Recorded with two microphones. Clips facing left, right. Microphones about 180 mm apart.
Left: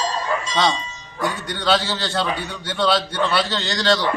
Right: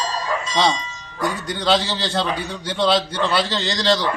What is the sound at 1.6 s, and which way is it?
A man's voice, centre (ahead or behind).